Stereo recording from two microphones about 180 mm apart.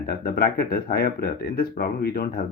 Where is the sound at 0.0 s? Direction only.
55° left (ahead or behind).